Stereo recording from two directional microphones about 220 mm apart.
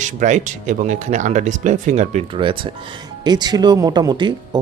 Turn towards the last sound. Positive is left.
turn(degrees=-20)  # may be behind; listen again after turning